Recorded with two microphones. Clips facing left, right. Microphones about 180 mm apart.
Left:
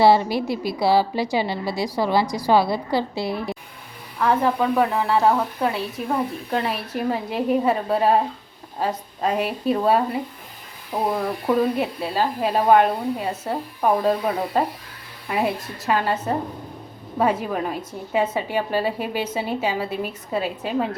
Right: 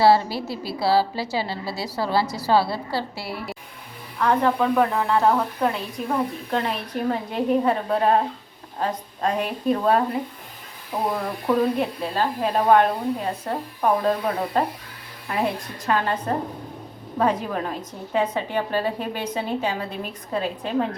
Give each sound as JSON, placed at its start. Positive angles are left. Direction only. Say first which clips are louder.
{"t": 0.3, "sound": "a woman's voice", "louder": "left 5 dB", "side_deg": 15}
{"t": 4.2, "sound": "a woman's voice", "louder": "even", "side_deg": 10}